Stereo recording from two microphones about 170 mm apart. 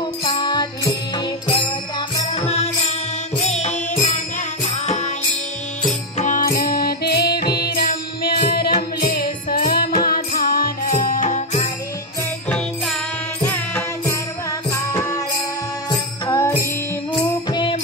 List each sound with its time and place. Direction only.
0.2 s music: 25° left (ahead or behind)
2.3 s music: 40° left (ahead or behind)
6.1 s music: 50° left (ahead or behind)
6.6 s music: 65° left (ahead or behind); by 11.6 s 45° left (ahead or behind)
12.4 s music: 5° left (ahead or behind); by 17.7 s 25° left (ahead or behind)